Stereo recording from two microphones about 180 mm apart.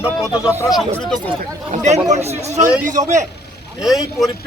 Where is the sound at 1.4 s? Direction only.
40° right (ahead or behind).